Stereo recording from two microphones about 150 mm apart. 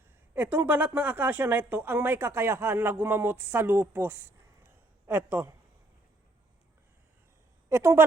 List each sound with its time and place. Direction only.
0.3 s a woman's voice: 10° right (ahead or behind)
7.7 s a woman's voice: 15° right (ahead or behind)